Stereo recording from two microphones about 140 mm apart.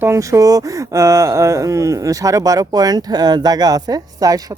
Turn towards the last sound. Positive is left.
turn(degrees=-25)  # may be behind; listen again after turning